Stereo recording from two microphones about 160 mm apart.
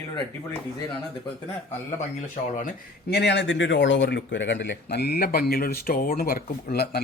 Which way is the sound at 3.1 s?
90° left.